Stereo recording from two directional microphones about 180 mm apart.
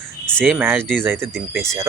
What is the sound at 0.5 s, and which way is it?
Speech, 10° right (ahead or behind).